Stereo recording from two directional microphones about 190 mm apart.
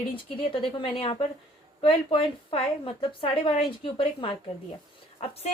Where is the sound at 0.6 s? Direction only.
30° left (ahead or behind).